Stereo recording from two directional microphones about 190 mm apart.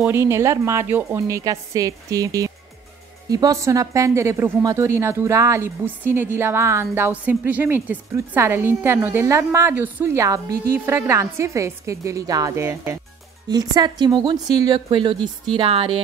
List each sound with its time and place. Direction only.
0.0 s a woman's voice: 15° right (ahead or behind); by 16.0 s 30° right (ahead or behind)